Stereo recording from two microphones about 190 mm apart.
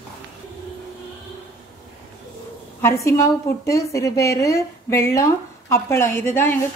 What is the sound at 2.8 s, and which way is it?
Speech, 15° left (ahead or behind).